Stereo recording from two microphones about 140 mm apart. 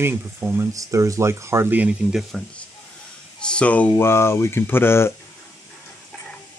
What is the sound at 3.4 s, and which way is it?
Speech, 5° left (ahead or behind).